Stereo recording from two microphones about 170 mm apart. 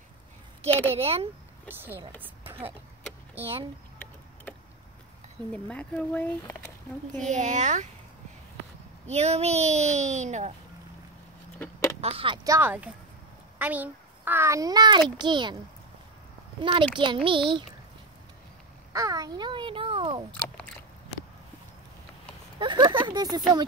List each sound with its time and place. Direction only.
0.7 s speech: 10° left (ahead or behind)
0.9 s speech: 35° right (ahead or behind)
1.7 s speech: 10° right (ahead or behind)
2.4 s a sound: 35° right (ahead or behind)
5.5 s speech: 5° left (ahead or behind)
7.2 s speech: 45° right (ahead or behind)
9.0 s speech: 40° right (ahead or behind)
12.0 s speech: 35° right (ahead or behind)
12.4 s a child's voice: 15° right (ahead or behind)
16.6 s a child's voice: 30° right (ahead or behind)
18.9 s babbling: 20° right (ahead or behind)
20.3 s speech: 5° left (ahead or behind)
22.6 s a child's voice: 25° right (ahead or behind)